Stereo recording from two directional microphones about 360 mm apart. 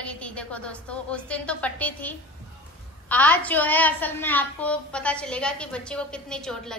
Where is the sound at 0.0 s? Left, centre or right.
Centre.